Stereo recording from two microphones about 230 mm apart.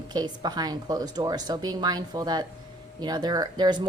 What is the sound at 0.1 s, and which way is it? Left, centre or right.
A woman's voice, centre.